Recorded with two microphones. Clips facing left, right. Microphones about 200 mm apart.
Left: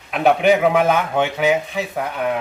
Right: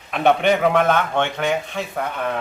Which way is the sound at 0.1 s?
5° left (ahead or behind).